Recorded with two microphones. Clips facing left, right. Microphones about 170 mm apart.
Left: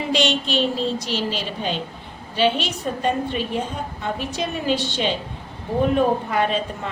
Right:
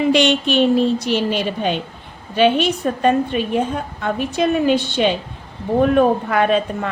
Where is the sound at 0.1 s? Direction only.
60° right (ahead or behind).